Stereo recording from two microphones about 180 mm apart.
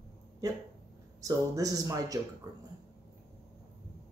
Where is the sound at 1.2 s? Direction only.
20° right (ahead or behind).